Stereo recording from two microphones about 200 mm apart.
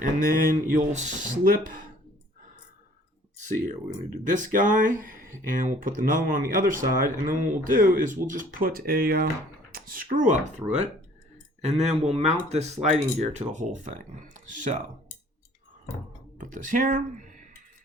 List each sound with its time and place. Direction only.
0.0 s speech: 45° right (ahead or behind)
4.1 s speech: 40° right (ahead or behind)
16.4 s speech: 40° right (ahead or behind)